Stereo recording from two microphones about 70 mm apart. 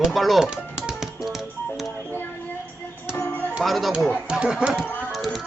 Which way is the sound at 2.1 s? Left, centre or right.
Left.